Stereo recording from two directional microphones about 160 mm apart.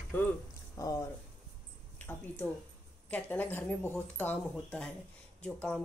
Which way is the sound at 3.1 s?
10° left (ahead or behind).